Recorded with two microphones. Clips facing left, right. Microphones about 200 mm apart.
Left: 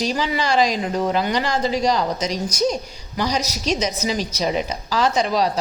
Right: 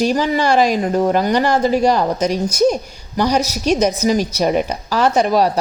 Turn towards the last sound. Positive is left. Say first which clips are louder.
# right 5 dB
turn(degrees=-55)  # may be behind; listen again after turning